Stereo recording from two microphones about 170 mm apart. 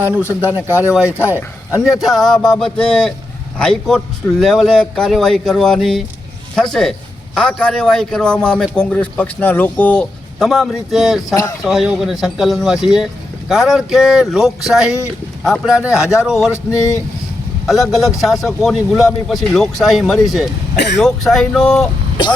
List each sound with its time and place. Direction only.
1.0 s speech: 15° left (ahead or behind)
1.7 s a man's voice: 5° right (ahead or behind)
16.7 s speech: 20° left (ahead or behind)
17.7 s a man's voice: centre (ahead or behind)
20.7 s speech: 90° left
21.0 s a man's voice: centre (ahead or behind)